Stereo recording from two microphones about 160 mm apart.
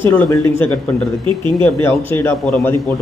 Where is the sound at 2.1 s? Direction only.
15° left (ahead or behind).